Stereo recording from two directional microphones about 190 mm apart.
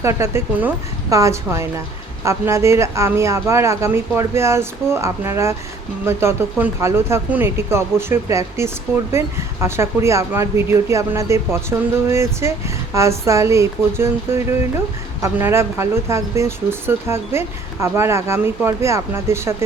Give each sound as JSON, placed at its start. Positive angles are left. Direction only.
{"t": 0.0, "sound": "speech", "side_deg": -15}